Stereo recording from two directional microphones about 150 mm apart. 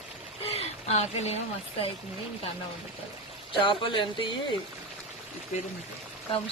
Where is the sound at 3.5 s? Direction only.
30° left (ahead or behind).